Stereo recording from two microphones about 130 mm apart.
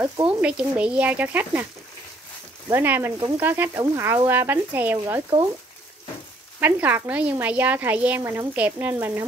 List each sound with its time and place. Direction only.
0.3 s a woman's voice: 10° right (ahead or behind)
2.7 s a woman's voice: 15° right (ahead or behind)
6.6 s a woman's voice: 15° right (ahead or behind)